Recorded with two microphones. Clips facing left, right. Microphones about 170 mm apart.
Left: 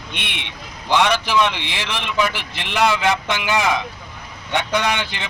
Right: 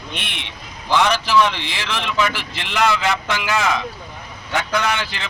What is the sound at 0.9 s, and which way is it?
Speech, 15° left (ahead or behind).